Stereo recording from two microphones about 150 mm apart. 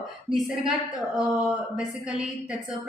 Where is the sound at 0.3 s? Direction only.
Centre (ahead or behind).